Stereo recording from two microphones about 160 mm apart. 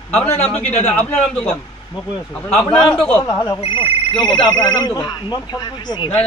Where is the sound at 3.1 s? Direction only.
20° left (ahead or behind).